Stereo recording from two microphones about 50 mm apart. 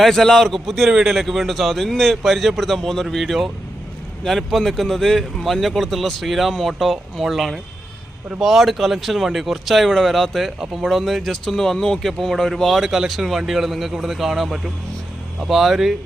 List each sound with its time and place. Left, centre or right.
0.0 s a man's voice: centre
12.8 s a man's voice: centre